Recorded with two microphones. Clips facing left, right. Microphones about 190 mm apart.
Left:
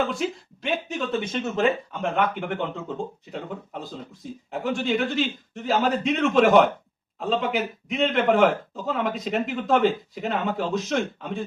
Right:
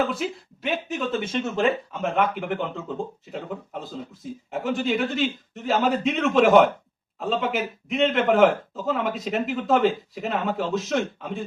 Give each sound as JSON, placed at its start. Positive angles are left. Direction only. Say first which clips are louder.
{"t": 0.1, "sound": "speech", "louder": "left 1 dB", "side_deg": 0}